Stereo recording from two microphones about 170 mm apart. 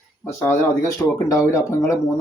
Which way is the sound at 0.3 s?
15° left (ahead or behind).